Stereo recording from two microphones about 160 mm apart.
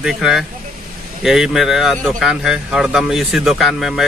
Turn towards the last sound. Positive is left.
turn(degrees=0)  # may be behind; listen again after turning